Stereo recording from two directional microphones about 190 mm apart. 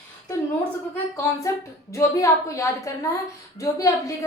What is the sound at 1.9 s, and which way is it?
A woman's voice, 15° left (ahead or behind).